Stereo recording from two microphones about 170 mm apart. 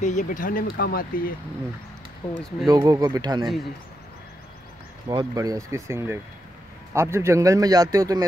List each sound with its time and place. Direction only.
0.0 s speech: 45° left (ahead or behind)
2.2 s speech: 35° left (ahead or behind)
2.6 s a man's voice: 20° right (ahead or behind)
5.0 s a man's voice: 25° right (ahead or behind)